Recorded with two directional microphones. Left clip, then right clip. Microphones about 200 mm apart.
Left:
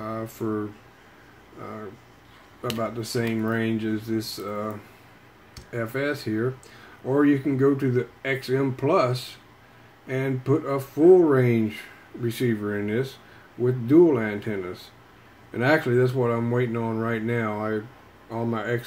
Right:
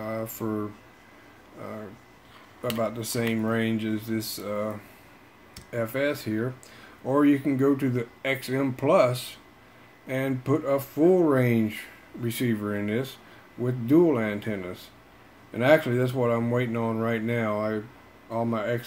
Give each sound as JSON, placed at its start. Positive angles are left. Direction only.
{"t": 0.0, "sound": "a sound", "side_deg": -25}
{"t": 2.8, "sound": "speech", "side_deg": -25}
{"t": 5.7, "sound": "speech", "side_deg": -20}